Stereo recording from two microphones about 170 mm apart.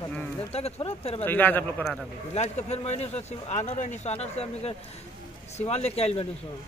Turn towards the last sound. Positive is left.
turn(degrees=35)  # may be behind; listen again after turning